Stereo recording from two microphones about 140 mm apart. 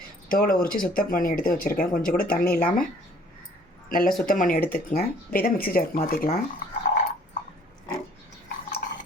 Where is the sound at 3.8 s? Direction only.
90° left.